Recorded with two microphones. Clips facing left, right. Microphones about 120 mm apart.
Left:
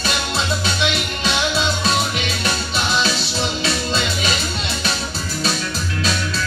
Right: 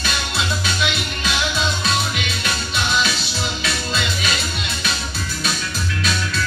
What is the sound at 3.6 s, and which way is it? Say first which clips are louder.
Music: left 3 dB; 30° left (ahead or behind).